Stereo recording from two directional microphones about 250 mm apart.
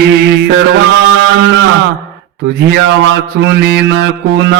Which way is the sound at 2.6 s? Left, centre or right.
Right.